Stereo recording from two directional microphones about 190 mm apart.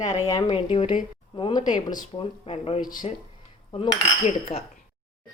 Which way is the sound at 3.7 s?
30° left (ahead or behind).